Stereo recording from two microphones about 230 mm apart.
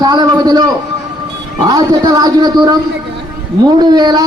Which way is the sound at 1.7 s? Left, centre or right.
Centre.